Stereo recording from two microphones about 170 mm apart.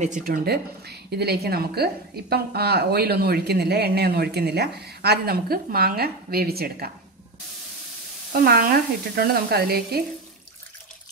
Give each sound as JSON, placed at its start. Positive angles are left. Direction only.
{"t": 0.0, "sound": "speech", "side_deg": -55}
{"t": 8.3, "sound": "frying", "side_deg": -60}